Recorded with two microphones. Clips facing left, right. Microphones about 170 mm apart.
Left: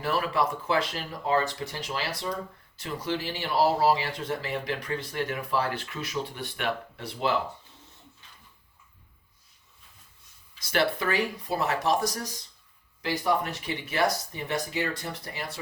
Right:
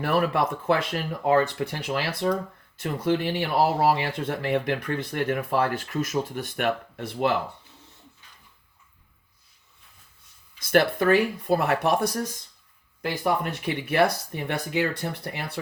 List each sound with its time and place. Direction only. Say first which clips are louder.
0.0 s speech: right 4 dB; 55° right (ahead or behind)
10.6 s speech: right 6 dB; 50° right (ahead or behind)